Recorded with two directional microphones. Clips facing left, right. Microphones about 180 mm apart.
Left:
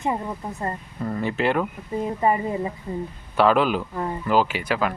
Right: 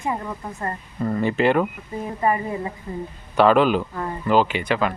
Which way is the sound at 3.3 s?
5° left (ahead or behind).